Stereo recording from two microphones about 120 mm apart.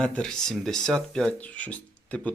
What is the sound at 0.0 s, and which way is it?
Speech, 10° left (ahead or behind).